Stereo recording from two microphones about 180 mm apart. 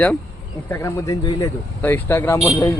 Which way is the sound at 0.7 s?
15° left (ahead or behind).